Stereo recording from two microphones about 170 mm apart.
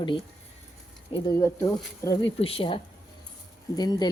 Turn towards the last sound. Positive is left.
turn(degrees=25)  # may be behind; listen again after turning